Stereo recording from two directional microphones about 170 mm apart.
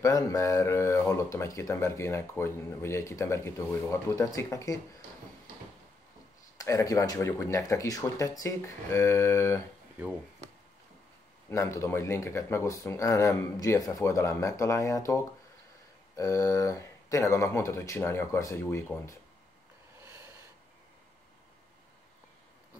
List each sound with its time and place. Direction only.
0.0 s speech: 20° left (ahead or behind)
6.6 s speech: 20° left (ahead or behind)
11.5 s speech: 15° left (ahead or behind)
20.0 s a sound: 15° right (ahead or behind)